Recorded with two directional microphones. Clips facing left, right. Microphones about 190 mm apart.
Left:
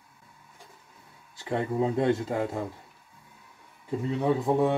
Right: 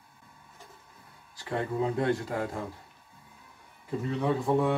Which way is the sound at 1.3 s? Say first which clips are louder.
Left 3 dB; 25° left (ahead or behind).